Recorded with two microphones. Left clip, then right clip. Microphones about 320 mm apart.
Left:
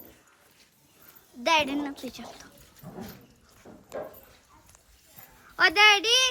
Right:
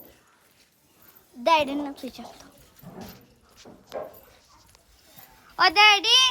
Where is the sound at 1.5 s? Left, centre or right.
Centre.